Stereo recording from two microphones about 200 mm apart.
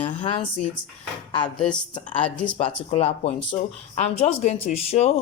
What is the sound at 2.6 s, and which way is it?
Speech, 30° left (ahead or behind).